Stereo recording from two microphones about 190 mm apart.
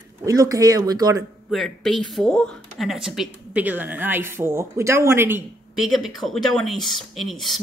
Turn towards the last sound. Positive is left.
turn(degrees=0)  # may be behind; listen again after turning